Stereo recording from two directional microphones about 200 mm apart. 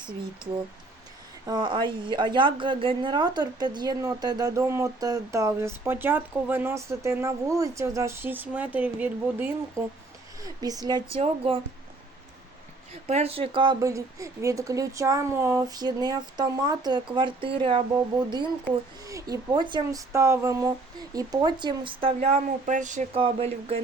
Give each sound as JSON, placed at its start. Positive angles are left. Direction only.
{"t": 1.5, "sound": "a woman's voice", "side_deg": -20}
{"t": 13.1, "sound": "a woman's voice", "side_deg": -30}